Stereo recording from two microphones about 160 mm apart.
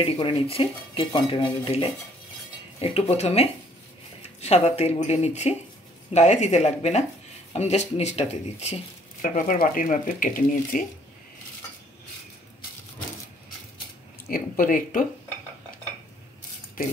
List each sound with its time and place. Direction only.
0.0 s dishes: 35° left (ahead or behind)
4.4 s speech: 40° left (ahead or behind)
9.2 s speech: 60° left (ahead or behind)
14.3 s speech: 60° left (ahead or behind)